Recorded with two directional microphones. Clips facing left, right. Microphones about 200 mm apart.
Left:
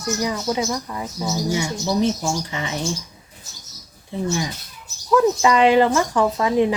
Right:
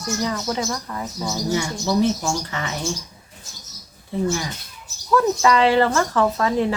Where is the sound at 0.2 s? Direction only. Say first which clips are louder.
Left 1 dB; 10° left (ahead or behind).